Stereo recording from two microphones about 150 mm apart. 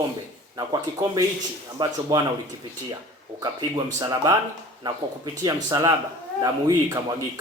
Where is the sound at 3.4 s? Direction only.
25° right (ahead or behind).